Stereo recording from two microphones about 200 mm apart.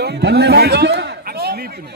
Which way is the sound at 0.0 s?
55° right (ahead or behind).